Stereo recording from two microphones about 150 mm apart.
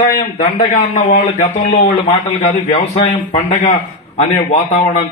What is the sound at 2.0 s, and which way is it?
A man's voice, 45° left (ahead or behind).